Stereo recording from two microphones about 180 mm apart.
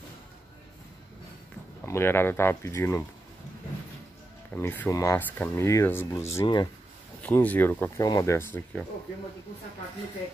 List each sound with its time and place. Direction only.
1.9 s speech: 10° left (ahead or behind)
4.6 s speech: 15° left (ahead or behind)
7.2 s speech: 10° left (ahead or behind)